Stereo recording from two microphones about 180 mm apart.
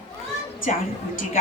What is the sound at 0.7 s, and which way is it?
Speech, 40° left (ahead or behind).